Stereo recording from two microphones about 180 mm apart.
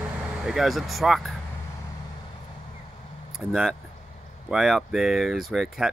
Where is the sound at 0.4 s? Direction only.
Centre (ahead or behind).